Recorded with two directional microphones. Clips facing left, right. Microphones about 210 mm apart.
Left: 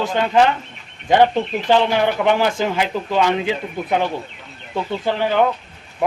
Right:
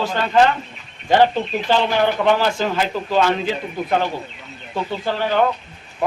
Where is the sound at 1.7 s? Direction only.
15° left (ahead or behind).